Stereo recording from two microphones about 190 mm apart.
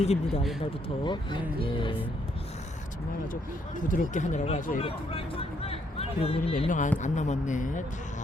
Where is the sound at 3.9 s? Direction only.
40° left (ahead or behind).